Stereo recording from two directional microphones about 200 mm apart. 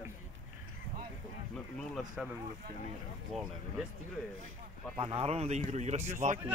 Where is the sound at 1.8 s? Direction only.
Centre (ahead or behind).